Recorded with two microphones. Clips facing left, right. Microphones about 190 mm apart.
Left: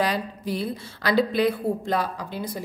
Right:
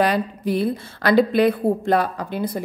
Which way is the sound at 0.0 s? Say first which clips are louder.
Right 5 dB; 55° right (ahead or behind).